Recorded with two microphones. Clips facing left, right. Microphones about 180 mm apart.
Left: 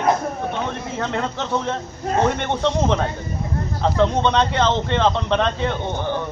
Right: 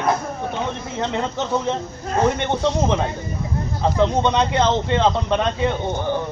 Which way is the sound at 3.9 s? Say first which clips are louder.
Even; 10° right (ahead or behind).